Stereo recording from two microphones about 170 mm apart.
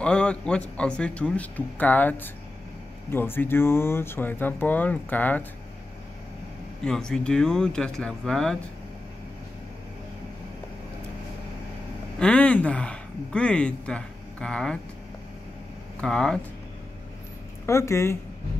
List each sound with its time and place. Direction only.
0.0 s speech: 5° left (ahead or behind)
6.8 s speech: 5° left (ahead or behind)
12.2 s speech: 5° left (ahead or behind)
16.0 s speech: 5° left (ahead or behind)
17.6 s speech: 15° left (ahead or behind)